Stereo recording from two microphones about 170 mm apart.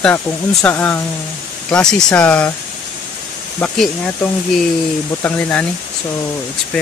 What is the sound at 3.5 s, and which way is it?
Speech, 5° left (ahead or behind).